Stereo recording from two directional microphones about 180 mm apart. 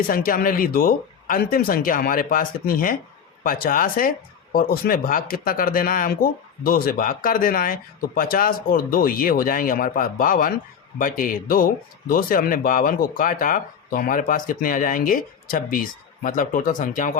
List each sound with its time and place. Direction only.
0.1 s speech: 50° left (ahead or behind)